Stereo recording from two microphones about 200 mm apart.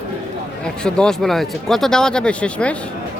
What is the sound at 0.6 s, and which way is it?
Speech, 5° left (ahead or behind).